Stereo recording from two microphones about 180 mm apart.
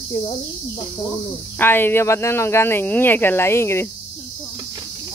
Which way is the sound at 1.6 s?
10° left (ahead or behind).